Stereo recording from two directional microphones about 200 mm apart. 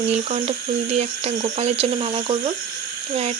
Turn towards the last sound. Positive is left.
turn(degrees=-30)  # may be behind; listen again after turning